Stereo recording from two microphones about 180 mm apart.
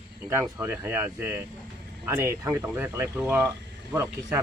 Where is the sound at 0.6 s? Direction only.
15° right (ahead or behind).